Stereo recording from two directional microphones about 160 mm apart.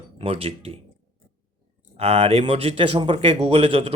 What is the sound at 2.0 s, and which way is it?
Speech, 40° right (ahead or behind).